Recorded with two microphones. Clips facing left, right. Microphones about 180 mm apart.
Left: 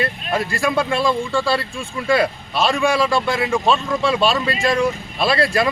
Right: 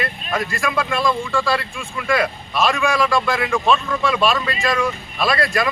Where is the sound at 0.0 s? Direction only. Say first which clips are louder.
Left 2 dB; 30° left (ahead or behind).